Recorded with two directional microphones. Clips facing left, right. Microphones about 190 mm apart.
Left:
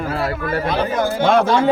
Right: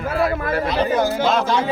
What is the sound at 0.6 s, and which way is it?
Speech, 55° left (ahead or behind).